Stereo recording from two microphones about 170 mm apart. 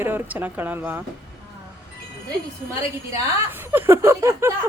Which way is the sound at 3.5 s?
10° right (ahead or behind).